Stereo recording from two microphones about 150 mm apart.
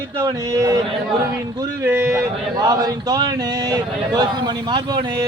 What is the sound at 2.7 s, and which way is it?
Speech, 25° right (ahead or behind).